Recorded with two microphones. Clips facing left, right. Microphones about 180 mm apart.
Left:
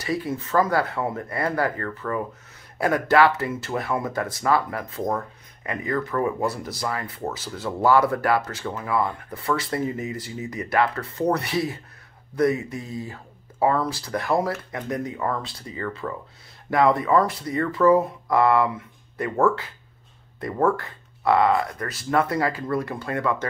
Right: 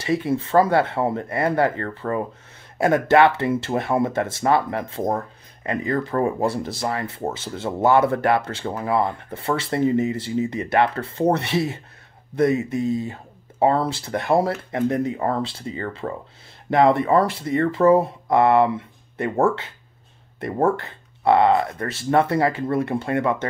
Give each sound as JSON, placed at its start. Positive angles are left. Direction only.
{"t": 0.0, "sound": "speech", "side_deg": -25}